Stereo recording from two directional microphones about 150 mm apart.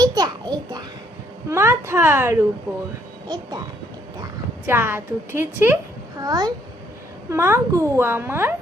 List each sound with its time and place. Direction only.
0.0 s a sound: 25° right (ahead or behind)
1.5 s a woman's voice: 15° right (ahead or behind)
4.6 s a woman's voice: 15° right (ahead or behind)
6.1 s a woman's voice: 25° right (ahead or behind)